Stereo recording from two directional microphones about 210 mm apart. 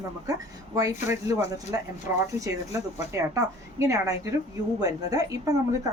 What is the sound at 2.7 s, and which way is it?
A woman's voice, 15° right (ahead or behind).